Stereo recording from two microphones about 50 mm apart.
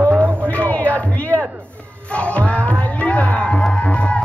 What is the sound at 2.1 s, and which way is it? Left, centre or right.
Music, left.